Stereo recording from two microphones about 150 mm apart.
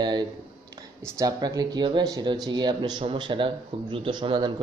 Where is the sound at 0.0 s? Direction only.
30° right (ahead or behind).